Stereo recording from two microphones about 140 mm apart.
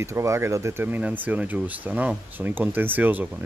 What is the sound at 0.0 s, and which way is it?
Speech, 20° right (ahead or behind).